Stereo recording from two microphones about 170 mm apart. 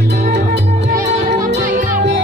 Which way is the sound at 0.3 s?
90° right.